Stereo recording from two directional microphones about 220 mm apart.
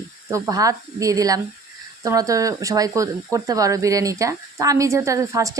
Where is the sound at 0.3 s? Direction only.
15° right (ahead or behind).